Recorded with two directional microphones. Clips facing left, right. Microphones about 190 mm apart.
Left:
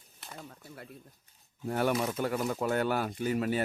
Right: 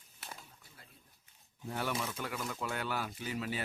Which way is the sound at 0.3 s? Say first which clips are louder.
Left 12 dB; 70° left (ahead or behind).